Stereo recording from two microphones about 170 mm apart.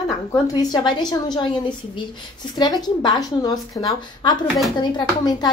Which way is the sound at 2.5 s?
25° left (ahead or behind).